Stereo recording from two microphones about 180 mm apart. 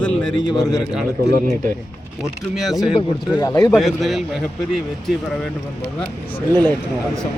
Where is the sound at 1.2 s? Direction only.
60° right (ahead or behind).